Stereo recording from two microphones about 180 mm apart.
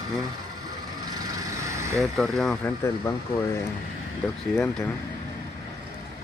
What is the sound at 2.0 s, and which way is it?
Speech, centre (ahead or behind).